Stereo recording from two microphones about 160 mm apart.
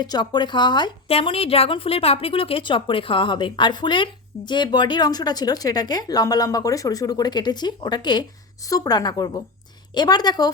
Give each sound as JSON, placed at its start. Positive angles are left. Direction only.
{"t": 0.0, "sound": "a woman's voice", "side_deg": 25}